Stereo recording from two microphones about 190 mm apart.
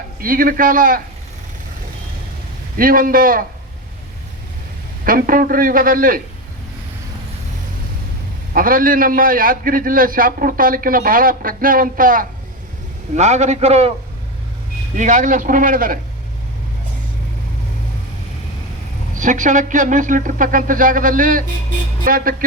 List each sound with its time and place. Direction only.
0.2 s a man's voice: 45° right (ahead or behind)
2.7 s a man's voice: 45° right (ahead or behind)
5.0 s a man's voice: 50° right (ahead or behind)
8.5 s a man's voice: 45° right (ahead or behind)
14.9 s a man's voice: 40° right (ahead or behind)
19.1 s a man's voice: 40° right (ahead or behind)